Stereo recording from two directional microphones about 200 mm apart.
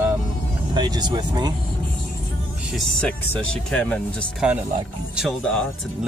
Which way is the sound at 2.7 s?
5° left (ahead or behind).